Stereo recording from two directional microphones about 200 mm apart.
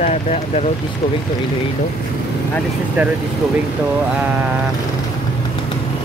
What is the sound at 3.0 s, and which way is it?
Speech, 10° right (ahead or behind).